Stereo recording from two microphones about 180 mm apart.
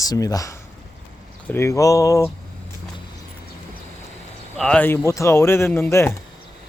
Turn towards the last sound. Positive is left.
turn(degrees=15)  # may be behind; listen again after turning